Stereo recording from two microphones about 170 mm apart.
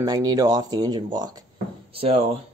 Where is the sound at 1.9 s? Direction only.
35° right (ahead or behind).